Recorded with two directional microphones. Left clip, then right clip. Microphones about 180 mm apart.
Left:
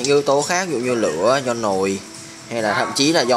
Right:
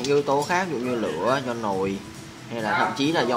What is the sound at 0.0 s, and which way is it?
Speech, 30° left (ahead or behind).